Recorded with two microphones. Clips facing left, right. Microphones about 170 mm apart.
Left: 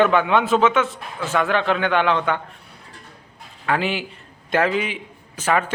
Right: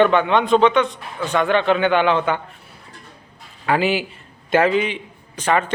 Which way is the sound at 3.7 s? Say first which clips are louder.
Right 4 dB; 5° right (ahead or behind).